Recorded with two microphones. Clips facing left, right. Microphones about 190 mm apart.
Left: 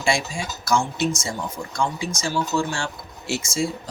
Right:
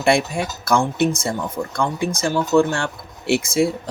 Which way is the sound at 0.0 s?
60° right (ahead or behind).